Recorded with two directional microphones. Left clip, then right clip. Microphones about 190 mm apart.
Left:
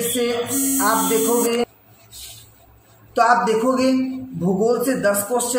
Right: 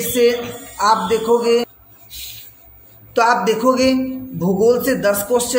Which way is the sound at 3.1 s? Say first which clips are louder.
Right 1 dB; 15° right (ahead or behind).